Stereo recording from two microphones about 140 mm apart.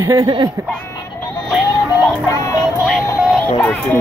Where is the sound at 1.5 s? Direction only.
5° right (ahead or behind).